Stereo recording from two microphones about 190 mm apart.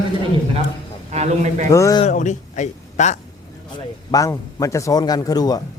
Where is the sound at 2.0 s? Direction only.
40° left (ahead or behind).